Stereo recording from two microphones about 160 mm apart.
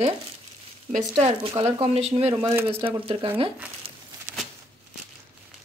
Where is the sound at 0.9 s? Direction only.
40° right (ahead or behind).